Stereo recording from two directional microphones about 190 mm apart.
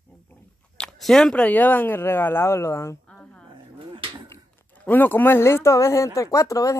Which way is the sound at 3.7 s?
25° right (ahead or behind).